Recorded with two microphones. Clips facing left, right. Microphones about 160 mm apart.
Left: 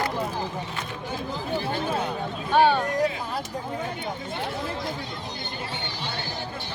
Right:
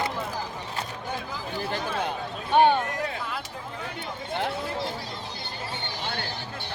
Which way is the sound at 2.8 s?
35° left (ahead or behind).